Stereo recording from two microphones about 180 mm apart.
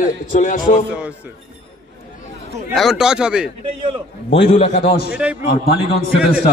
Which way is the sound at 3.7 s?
30° right (ahead or behind).